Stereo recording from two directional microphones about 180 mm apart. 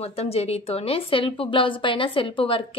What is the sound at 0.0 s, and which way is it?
A woman's voice, 35° left (ahead or behind).